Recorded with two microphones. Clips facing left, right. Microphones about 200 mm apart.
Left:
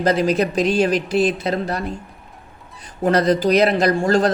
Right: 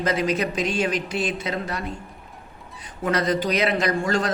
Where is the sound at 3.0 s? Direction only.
35° left (ahead or behind).